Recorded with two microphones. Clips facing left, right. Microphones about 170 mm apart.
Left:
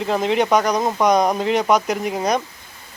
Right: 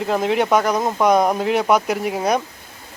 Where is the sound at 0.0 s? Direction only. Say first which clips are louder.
Even; 5° right (ahead or behind).